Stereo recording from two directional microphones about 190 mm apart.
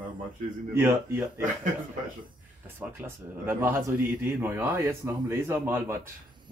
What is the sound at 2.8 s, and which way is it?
Speech, 10° right (ahead or behind).